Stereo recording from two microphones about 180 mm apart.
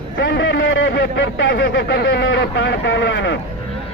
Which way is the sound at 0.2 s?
90° left.